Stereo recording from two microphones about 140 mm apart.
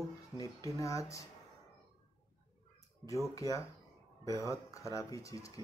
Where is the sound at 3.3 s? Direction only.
25° left (ahead or behind).